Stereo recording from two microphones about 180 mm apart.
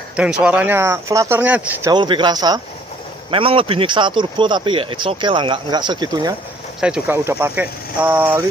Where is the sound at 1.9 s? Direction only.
25° right (ahead or behind).